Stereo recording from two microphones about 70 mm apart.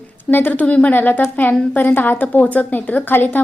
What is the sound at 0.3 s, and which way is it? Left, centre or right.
A woman's voice, left.